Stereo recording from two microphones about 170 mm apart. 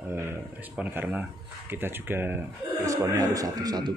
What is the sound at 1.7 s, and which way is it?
A man's voice, 10° right (ahead or behind).